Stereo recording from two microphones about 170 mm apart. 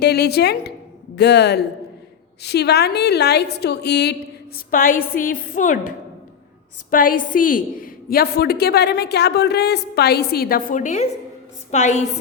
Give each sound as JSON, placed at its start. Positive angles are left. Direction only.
{"t": 0.0, "sound": "a woman's voice", "side_deg": 75}
{"t": 4.7, "sound": "a woman's voice", "side_deg": 55}
{"t": 6.9, "sound": "a woman's voice", "side_deg": 55}